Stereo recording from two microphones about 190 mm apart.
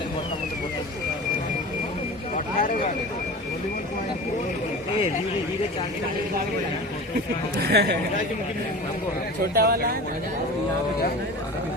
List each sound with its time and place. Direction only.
2.3 s vehicle: 45° left (ahead or behind)
7.6 s speech: 60° right (ahead or behind)
9.6 s speech: 50° right (ahead or behind)